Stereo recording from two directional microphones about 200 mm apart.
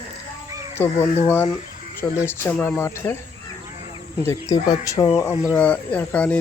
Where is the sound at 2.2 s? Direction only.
10° left (ahead or behind).